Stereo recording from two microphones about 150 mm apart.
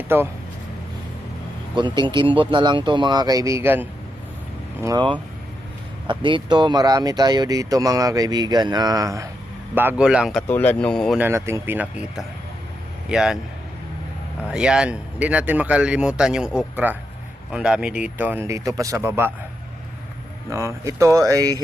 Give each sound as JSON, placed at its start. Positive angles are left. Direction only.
{"t": 0.1, "sound": "a man's voice", "side_deg": -15}
{"t": 1.7, "sound": "speech", "side_deg": -30}
{"t": 4.8, "sound": "speech", "side_deg": -25}
{"t": 9.7, "sound": "speech", "side_deg": -10}
{"t": 10.5, "sound": "speech", "side_deg": 10}
{"t": 11.2, "sound": "a man's voice", "side_deg": -15}
{"t": 14.5, "sound": "a man's voice", "side_deg": -5}
{"t": 20.5, "sound": "speech", "side_deg": -20}